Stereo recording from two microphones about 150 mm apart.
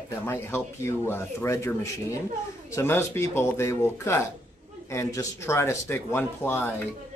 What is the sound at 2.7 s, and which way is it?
Speech, 15° left (ahead or behind).